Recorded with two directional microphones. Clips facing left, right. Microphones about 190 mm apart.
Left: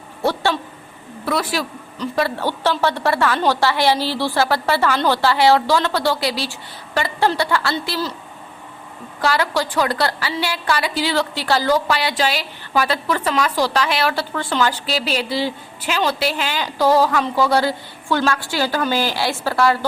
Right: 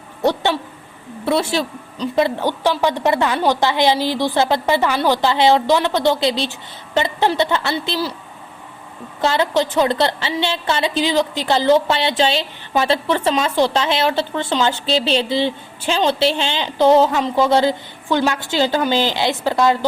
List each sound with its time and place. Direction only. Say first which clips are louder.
0.2 s a sound: right 2 dB; 20° right (ahead or behind)
1.2 s a woman's voice: right 3 dB; 25° right (ahead or behind)
9.2 s a woman's voice: right 3 dB; 20° right (ahead or behind)